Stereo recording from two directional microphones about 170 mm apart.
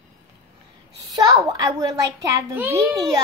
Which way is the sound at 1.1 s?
25° right (ahead or behind).